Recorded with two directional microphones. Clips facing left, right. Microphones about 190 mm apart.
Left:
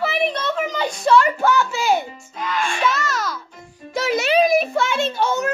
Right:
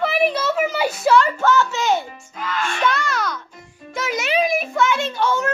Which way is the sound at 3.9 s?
30° left (ahead or behind).